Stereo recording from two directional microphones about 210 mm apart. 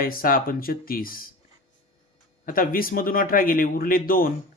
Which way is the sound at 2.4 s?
40° left (ahead or behind).